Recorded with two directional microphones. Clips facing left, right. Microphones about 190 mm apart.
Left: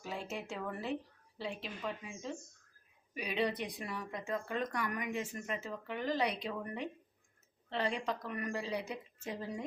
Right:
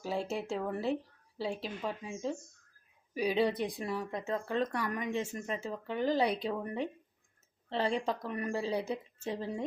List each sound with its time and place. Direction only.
0.0 s speech: 30° right (ahead or behind)